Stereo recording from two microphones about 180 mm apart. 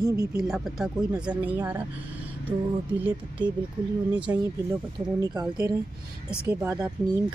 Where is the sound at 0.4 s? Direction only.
Centre (ahead or behind).